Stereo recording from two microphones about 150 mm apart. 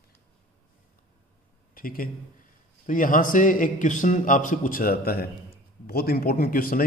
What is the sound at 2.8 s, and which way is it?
A man's voice, 65° left (ahead or behind).